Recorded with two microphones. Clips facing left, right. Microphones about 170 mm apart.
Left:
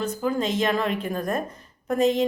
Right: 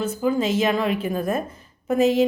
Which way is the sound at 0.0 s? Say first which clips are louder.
Right 3 dB; 5° right (ahead or behind).